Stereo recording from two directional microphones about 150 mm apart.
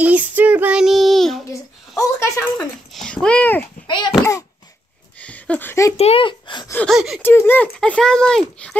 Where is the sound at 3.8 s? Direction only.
30° left (ahead or behind).